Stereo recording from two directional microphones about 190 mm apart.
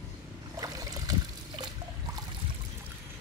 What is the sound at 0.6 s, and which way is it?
Boat, 20° right (ahead or behind).